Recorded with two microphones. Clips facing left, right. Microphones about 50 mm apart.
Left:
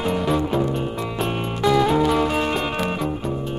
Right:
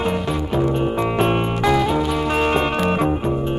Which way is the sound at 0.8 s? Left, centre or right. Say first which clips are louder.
Right 6 dB; right.